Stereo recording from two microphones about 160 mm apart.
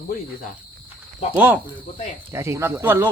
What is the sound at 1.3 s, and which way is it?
Speech, 10° right (ahead or behind).